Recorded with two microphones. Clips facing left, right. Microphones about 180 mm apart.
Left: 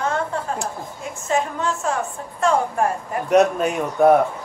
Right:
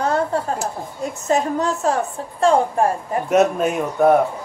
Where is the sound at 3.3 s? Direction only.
Centre (ahead or behind).